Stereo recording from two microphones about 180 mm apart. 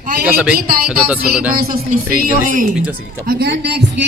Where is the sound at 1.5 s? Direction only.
55° right (ahead or behind).